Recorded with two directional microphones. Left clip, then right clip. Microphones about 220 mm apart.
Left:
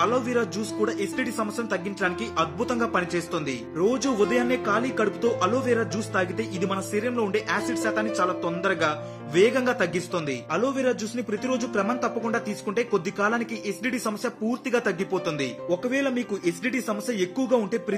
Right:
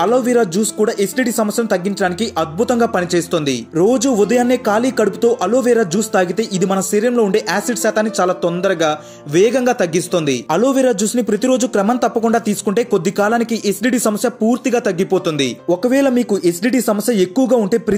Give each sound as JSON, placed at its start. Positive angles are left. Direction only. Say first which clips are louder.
{"t": 0.0, "sound": "speech", "louder": "right 10 dB", "side_deg": -15}